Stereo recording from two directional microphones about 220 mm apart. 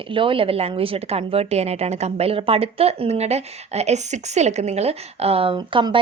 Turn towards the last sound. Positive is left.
turn(degrees=-20)  # may be behind; listen again after turning